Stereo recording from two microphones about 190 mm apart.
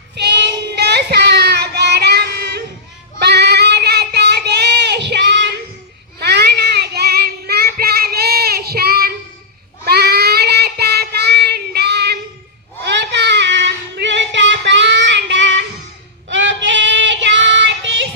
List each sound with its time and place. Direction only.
0.2 s child singing: 65° right (ahead or behind)